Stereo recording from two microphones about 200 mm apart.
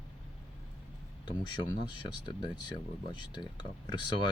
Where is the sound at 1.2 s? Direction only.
20° left (ahead or behind).